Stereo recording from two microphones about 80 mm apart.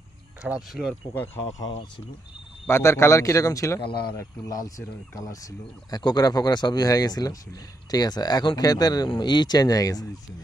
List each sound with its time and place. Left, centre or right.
0.4 s speech: centre
1.1 s speech: left
2.7 s a man's voice: left